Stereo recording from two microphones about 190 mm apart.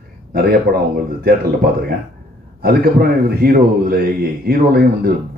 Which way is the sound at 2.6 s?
55° right (ahead or behind).